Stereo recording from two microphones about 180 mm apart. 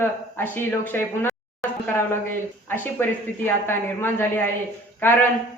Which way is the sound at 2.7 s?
10° left (ahead or behind).